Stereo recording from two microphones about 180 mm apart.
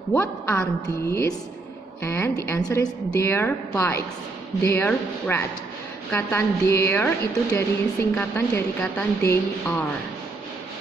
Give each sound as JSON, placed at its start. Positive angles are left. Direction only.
{"t": 0.1, "sound": "a woman's voice", "side_deg": 10}